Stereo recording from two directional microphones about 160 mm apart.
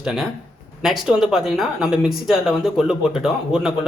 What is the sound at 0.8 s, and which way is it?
Speech, centre (ahead or behind).